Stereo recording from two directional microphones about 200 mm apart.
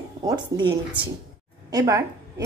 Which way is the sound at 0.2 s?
20° right (ahead or behind).